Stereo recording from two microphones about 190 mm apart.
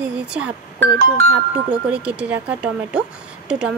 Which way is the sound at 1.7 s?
5° right (ahead or behind).